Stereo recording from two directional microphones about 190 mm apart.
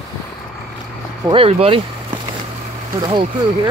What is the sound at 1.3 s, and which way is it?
Speech, 30° right (ahead or behind).